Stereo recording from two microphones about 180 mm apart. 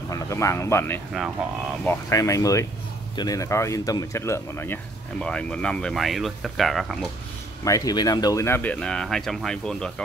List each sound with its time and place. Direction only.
0.1 s speech: 15° left (ahead or behind); by 7.1 s centre (ahead or behind)
7.6 s speech: 20° left (ahead or behind); by 10.0 s 5° left (ahead or behind)